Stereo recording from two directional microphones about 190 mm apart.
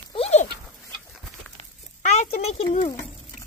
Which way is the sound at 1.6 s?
35° left (ahead or behind).